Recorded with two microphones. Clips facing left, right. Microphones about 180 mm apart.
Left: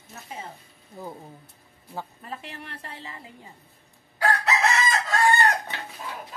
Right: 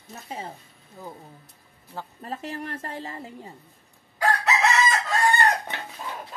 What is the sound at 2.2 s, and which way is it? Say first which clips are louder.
Speech: right 6 dB; 40° right (ahead or behind).